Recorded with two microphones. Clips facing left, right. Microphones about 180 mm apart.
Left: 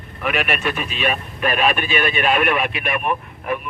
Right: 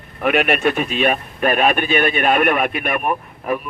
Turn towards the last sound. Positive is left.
turn(degrees=-40)  # may be behind; listen again after turning